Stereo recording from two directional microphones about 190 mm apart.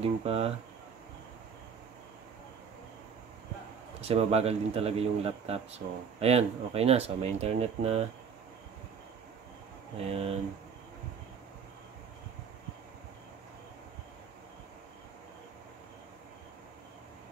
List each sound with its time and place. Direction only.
0.0 s speech: 30° right (ahead or behind)
4.0 s speech: 35° right (ahead or behind)
9.9 s speech: 30° right (ahead or behind)